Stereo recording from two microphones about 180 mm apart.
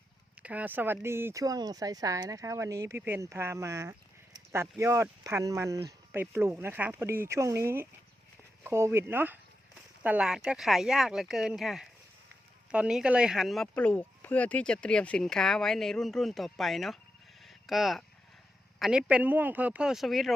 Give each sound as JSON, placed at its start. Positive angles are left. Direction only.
{"t": 0.4, "sound": "speech", "side_deg": -10}
{"t": 17.4, "sound": "a sound", "side_deg": 0}
{"t": 18.8, "sound": "speech", "side_deg": -5}